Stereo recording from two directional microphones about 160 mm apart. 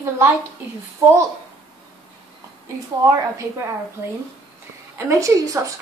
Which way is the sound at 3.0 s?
20° right (ahead or behind).